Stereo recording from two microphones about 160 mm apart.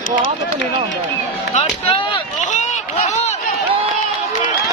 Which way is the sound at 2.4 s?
50° left (ahead or behind).